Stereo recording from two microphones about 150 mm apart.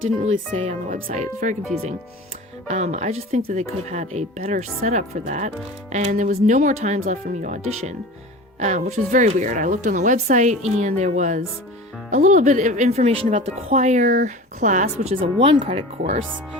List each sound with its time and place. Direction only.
0.2 s speech: 55° right (ahead or behind)
2.6 s speech: 50° right (ahead or behind)
15.2 s speech: 35° right (ahead or behind)